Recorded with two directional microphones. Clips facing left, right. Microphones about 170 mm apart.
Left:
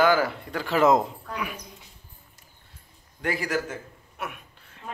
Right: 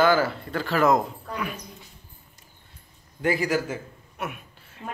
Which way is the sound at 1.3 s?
10° left (ahead or behind).